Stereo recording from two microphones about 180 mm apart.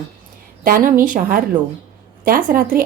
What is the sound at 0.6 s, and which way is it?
A woman's voice, 50° right (ahead or behind).